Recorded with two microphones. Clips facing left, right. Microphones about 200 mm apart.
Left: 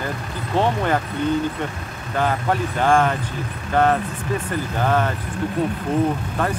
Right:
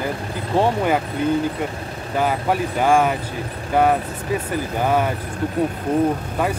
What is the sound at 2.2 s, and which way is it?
Speech, 10° right (ahead or behind).